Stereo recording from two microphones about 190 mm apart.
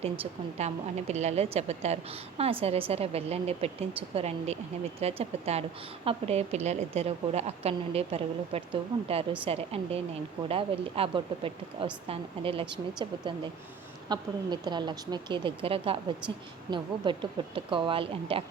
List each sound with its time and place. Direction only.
0.0 s a woman's voice: 35° right (ahead or behind)